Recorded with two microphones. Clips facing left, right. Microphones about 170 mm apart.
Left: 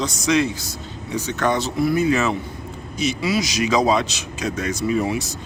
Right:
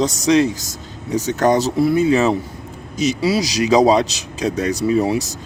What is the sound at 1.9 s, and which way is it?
Speech, 30° right (ahead or behind).